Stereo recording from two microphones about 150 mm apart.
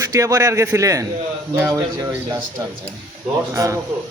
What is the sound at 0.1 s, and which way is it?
A man's voice, 20° right (ahead or behind).